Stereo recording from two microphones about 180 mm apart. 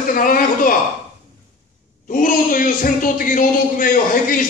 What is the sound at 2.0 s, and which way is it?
A man's voice, 50° left (ahead or behind).